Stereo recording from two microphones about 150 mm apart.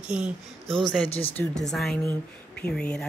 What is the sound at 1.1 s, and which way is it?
Speech, 40° left (ahead or behind).